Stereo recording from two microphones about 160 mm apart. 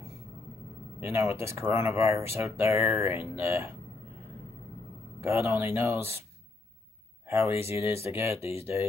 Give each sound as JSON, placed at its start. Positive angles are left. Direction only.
{"t": 1.0, "sound": "speech", "side_deg": -15}
{"t": 5.2, "sound": "speech", "side_deg": -15}
{"t": 7.2, "sound": "speech", "side_deg": -15}
{"t": 8.4, "sound": "speech", "side_deg": 40}